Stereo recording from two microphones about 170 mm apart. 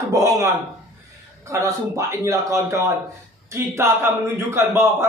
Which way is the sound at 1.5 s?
20° right (ahead or behind).